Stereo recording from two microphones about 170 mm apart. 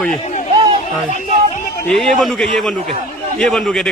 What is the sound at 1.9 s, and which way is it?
A man's voice, centre (ahead or behind).